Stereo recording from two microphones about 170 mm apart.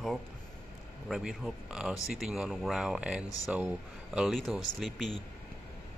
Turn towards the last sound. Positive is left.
turn(degrees=0)  # may be behind; listen again after turning